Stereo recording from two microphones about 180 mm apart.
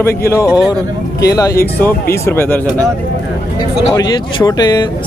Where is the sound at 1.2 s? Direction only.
20° left (ahead or behind).